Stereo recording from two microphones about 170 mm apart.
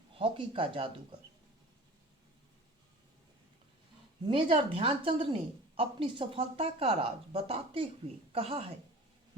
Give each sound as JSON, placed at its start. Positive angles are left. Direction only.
{"t": 0.1, "sound": "speech", "side_deg": -30}
{"t": 4.3, "sound": "a woman's voice", "side_deg": -30}